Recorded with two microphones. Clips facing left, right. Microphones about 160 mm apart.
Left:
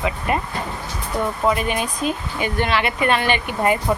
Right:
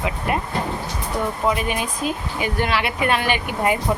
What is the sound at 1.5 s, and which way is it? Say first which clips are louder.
Speech: left 1 dB; 5° right (ahead or behind).